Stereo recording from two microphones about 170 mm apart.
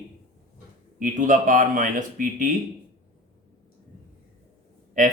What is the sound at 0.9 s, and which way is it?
Speech, 50° right (ahead or behind).